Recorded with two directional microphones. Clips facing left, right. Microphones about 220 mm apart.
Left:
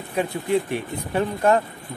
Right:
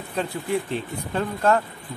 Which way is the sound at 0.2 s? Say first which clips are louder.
Left 3 dB; 10° left (ahead or behind).